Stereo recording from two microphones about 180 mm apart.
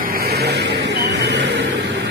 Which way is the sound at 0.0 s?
55° right (ahead or behind).